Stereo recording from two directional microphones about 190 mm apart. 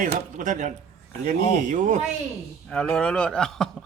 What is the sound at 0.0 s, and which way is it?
Speech, 40° right (ahead or behind).